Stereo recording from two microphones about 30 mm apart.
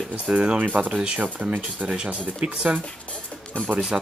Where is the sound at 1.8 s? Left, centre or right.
Right.